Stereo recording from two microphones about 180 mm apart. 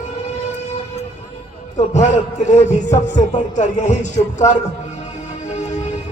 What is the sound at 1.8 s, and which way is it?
A man's voice, 40° left (ahead or behind).